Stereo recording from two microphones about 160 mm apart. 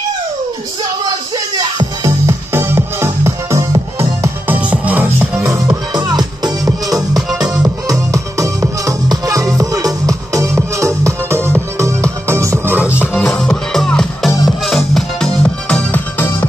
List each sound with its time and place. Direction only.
1.0 s music: 25° right (ahead or behind)
4.5 s music: 10° right (ahead or behind); by 6.7 s 25° right (ahead or behind)
6.9 s music: centre (ahead or behind)
7.8 s music: 20° right (ahead or behind)
13.0 s music: 5° left (ahead or behind)